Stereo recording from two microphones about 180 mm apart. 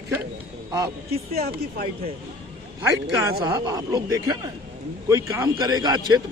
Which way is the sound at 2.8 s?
15° right (ahead or behind).